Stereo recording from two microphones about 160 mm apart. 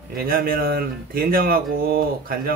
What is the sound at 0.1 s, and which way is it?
Speech, 65° right (ahead or behind).